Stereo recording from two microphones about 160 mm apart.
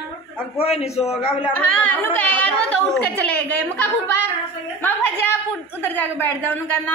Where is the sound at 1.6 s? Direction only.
10° left (ahead or behind).